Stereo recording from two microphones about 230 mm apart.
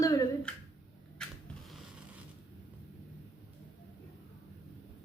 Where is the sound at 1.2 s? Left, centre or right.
Centre.